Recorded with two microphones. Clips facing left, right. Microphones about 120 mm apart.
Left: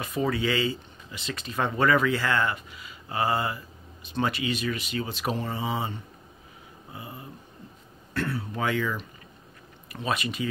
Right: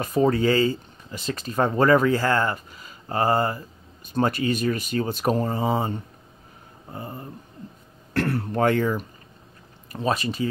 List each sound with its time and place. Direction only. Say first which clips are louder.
0.0 s speech: right 7 dB; 40° right (ahead or behind)
8.1 s speech: right 6 dB; 70° right (ahead or behind); by 9.0 s 45° right (ahead or behind)
9.9 s speech: right 5 dB; 35° right (ahead or behind)